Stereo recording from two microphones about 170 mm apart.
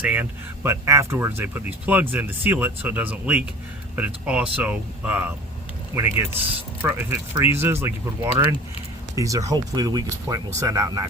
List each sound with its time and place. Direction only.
0.1 s speech: 10° right (ahead or behind)